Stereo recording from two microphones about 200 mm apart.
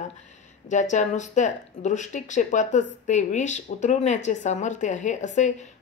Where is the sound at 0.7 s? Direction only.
35° left (ahead or behind).